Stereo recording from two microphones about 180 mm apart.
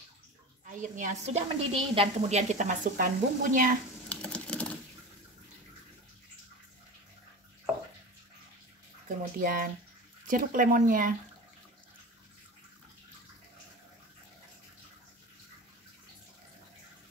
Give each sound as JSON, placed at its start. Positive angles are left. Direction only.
{"t": 0.7, "sound": "speech", "side_deg": -45}
{"t": 4.1, "sound": "typing", "side_deg": 5}
{"t": 9.2, "sound": "speech", "side_deg": -50}